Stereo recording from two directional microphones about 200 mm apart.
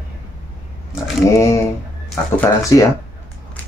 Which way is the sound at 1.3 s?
15° left (ahead or behind).